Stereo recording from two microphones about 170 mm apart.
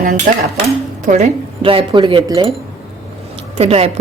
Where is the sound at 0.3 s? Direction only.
55° right (ahead or behind).